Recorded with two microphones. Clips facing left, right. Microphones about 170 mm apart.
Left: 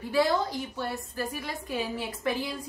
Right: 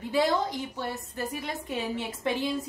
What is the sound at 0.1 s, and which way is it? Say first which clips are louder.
A woman's voice: even; 20° right (ahead or behind).